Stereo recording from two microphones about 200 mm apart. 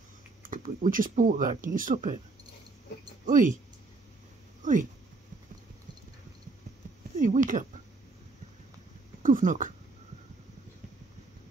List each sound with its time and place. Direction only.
0.5 s speech: 40° right (ahead or behind)
3.3 s speech: 40° right (ahead or behind)
4.6 s speech: 40° right (ahead or behind)
7.2 s speech: 40° right (ahead or behind)
9.2 s speech: 40° right (ahead or behind)